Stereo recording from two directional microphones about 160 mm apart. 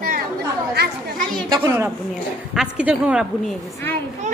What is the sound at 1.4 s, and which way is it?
Speech, 25° right (ahead or behind).